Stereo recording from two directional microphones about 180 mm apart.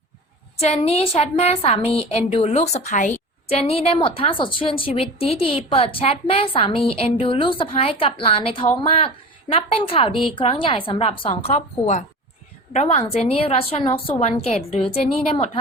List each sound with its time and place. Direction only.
0.6 s a woman's voice: 35° left (ahead or behind)